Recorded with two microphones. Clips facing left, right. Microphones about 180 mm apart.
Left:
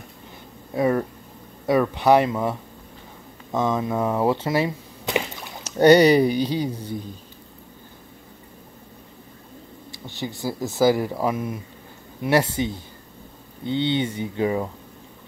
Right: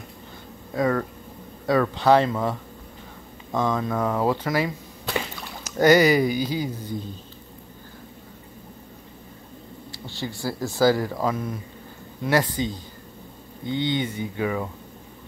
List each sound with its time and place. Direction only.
0.7 s speech: 20° left (ahead or behind)
3.5 s speech: 20° left (ahead or behind)
5.8 s speech: 30° left (ahead or behind)
10.0 s speech: 20° left (ahead or behind)
13.9 s speech: 25° left (ahead or behind)